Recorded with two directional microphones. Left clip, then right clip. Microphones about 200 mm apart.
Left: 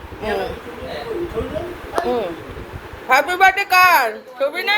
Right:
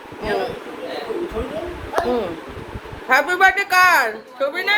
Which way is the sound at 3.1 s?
5° right (ahead or behind).